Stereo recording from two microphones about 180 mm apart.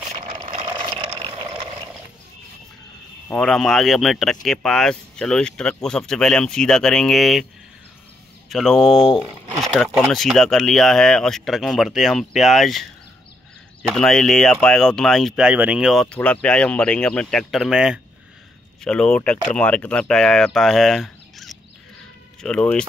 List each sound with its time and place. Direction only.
0.1 s vehicle: 35° right (ahead or behind)
0.7 s vehicle: 25° right (ahead or behind)
3.3 s speech: 5° left (ahead or behind)
8.5 s speech: centre (ahead or behind)
13.8 s speech: centre (ahead or behind)